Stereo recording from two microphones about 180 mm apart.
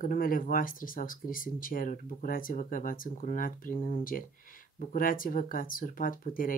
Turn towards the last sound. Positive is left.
turn(degrees=50)  # may be behind; listen again after turning